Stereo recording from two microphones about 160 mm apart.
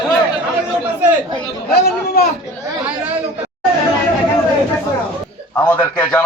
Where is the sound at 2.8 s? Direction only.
10° right (ahead or behind).